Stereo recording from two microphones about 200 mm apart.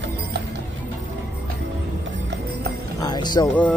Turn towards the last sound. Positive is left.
turn(degrees=5)  # may be behind; listen again after turning